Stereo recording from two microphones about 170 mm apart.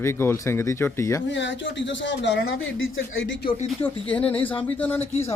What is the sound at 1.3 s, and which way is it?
Speech, 90° left.